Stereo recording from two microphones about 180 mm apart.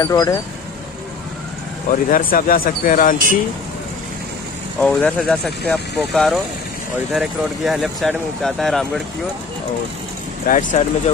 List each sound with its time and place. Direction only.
0.0 s speech: 20° left (ahead or behind)
1.9 s speech: 50° left (ahead or behind)
4.7 s speech: 5° left (ahead or behind)
10.4 s speech: 45° left (ahead or behind)